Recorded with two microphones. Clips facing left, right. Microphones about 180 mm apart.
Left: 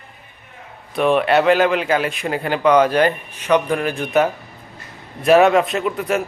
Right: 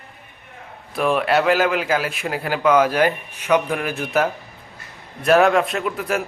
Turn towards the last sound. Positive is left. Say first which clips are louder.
# left 3 dB
turn(degrees=0)  # may be behind; listen again after turning